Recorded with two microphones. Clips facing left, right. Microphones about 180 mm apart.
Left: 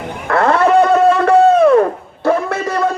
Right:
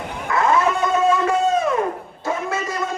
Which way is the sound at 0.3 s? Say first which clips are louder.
Left 6 dB; 65° left (ahead or behind).